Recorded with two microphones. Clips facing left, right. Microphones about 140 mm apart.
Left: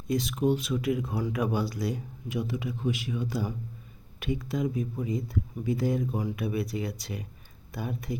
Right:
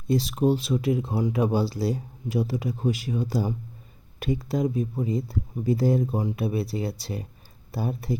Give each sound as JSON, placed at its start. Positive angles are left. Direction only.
{"t": 0.1, "sound": "speech", "side_deg": -35}